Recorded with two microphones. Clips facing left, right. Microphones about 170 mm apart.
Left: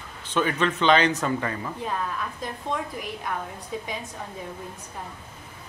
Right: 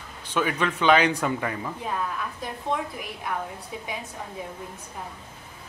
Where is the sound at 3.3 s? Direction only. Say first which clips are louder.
Right 2 dB; 5° right (ahead or behind).